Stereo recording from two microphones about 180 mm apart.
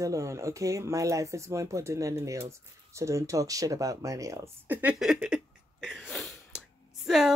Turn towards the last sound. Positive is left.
turn(degrees=0)  # may be behind; listen again after turning